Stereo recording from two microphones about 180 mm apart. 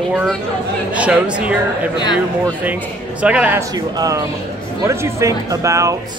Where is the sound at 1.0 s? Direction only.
5° right (ahead or behind).